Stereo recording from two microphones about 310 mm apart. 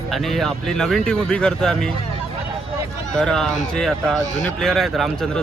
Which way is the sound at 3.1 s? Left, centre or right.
Centre.